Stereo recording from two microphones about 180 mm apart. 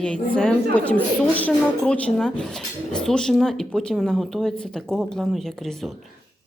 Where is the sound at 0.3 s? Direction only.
5° left (ahead or behind).